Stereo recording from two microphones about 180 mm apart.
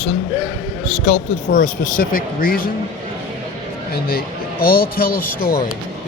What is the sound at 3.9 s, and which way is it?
A man's voice, 55° left (ahead or behind).